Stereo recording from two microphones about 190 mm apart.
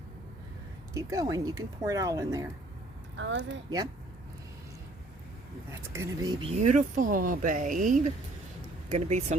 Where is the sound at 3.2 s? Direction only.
70° right (ahead or behind).